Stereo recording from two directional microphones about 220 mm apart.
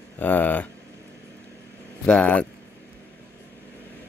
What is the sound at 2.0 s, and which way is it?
Speech, 5° left (ahead or behind).